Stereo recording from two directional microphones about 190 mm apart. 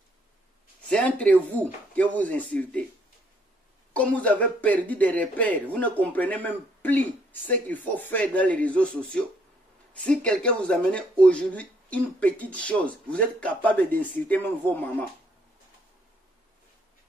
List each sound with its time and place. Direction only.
0.8 s speech: 5° left (ahead or behind)
3.9 s speech: 5° left (ahead or behind)